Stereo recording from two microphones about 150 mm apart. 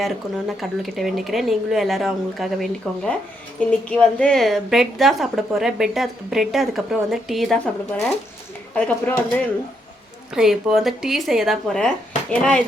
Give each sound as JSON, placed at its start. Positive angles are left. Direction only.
{"t": 0.0, "sound": "speech", "side_deg": 0}
{"t": 10.3, "sound": "speech", "side_deg": -5}